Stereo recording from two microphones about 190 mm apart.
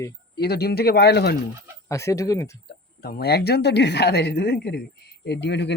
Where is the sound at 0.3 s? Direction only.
55° left (ahead or behind).